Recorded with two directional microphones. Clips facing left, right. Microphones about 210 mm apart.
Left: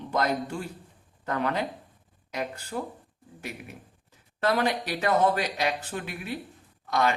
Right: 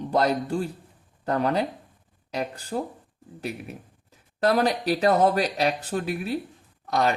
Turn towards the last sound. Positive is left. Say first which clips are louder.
# right 2 dB
turn(degrees=-40)  # may be behind; listen again after turning